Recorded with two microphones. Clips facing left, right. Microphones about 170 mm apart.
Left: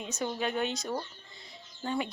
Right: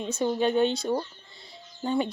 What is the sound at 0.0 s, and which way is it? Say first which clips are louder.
A woman's voice: right 8 dB; 30° right (ahead or behind).